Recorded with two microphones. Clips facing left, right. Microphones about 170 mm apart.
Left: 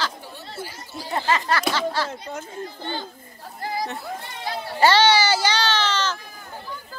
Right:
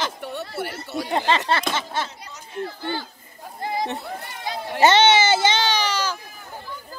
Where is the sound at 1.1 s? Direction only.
20° right (ahead or behind).